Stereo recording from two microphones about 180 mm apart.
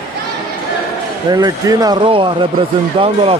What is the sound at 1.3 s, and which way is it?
A man's voice, 20° right (ahead or behind).